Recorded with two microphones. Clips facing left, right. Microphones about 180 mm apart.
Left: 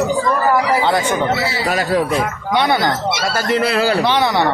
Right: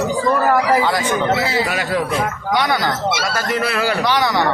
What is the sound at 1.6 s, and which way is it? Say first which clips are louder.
Speech: left 4 dB; 40° left (ahead or behind).